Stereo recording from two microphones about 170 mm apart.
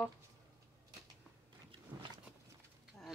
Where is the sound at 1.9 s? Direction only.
25° right (ahead or behind).